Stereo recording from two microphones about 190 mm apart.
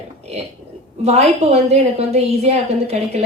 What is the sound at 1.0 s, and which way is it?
A woman's voice, 35° right (ahead or behind).